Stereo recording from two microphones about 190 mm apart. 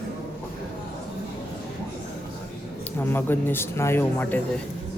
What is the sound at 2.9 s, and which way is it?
Speech, 10° left (ahead or behind).